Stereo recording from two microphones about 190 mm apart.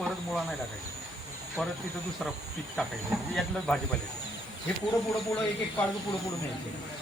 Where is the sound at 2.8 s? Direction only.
Centre (ahead or behind).